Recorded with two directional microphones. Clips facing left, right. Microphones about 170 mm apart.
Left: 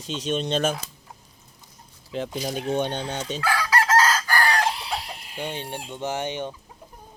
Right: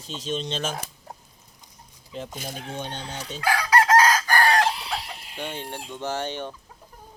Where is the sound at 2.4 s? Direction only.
65° left (ahead or behind).